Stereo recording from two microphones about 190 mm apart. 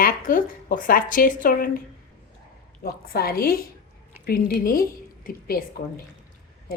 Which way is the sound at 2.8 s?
55° left (ahead or behind).